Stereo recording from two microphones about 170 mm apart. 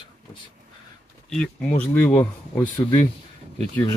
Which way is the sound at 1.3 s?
5° left (ahead or behind).